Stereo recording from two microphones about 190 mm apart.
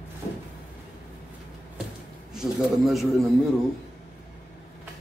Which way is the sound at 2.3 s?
Centre (ahead or behind).